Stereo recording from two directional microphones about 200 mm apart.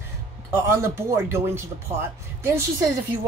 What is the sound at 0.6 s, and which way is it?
Speech, 15° right (ahead or behind).